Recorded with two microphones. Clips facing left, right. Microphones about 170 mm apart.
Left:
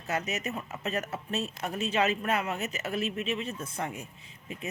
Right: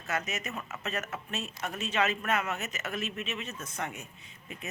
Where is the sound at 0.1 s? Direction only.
35° left (ahead or behind).